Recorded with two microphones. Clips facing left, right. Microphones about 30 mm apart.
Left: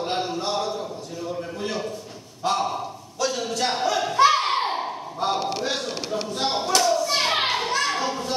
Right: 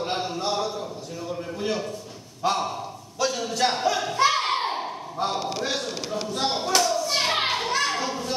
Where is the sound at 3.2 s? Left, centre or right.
Centre.